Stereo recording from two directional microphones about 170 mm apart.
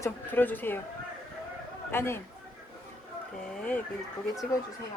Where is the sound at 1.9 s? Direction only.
15° left (ahead or behind).